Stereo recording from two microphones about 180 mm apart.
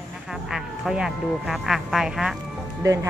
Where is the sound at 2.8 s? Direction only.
15° right (ahead or behind).